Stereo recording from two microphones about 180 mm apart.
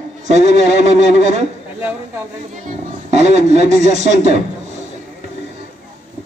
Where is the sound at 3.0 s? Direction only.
40° right (ahead or behind).